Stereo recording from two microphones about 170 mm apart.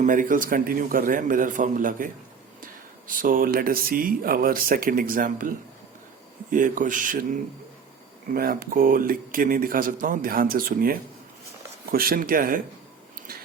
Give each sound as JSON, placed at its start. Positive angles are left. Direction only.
{"t": 0.0, "sound": "a man's voice", "side_deg": -50}
{"t": 3.1, "sound": "a man's voice", "side_deg": -55}